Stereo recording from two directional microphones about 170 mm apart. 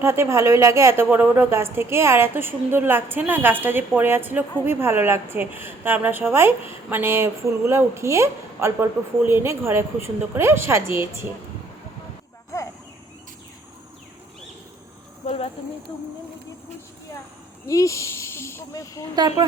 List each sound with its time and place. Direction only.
0.0 s a woman's voice: 15° right (ahead or behind)
15.2 s speech: 40° left (ahead or behind)
17.7 s speech: 20° left (ahead or behind)
19.1 s a woman's voice: 25° right (ahead or behind)